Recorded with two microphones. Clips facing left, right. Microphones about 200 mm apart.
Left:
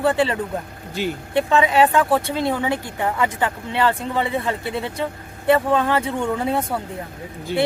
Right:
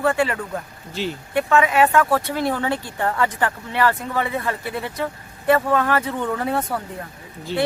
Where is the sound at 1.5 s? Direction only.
20° left (ahead or behind).